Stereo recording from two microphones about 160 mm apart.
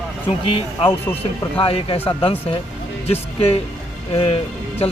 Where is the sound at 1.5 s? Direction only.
35° left (ahead or behind).